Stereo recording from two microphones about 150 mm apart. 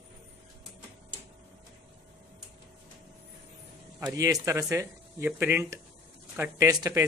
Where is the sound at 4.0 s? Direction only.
20° right (ahead or behind).